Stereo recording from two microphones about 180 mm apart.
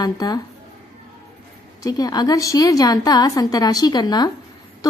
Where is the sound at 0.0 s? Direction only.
20° left (ahead or behind).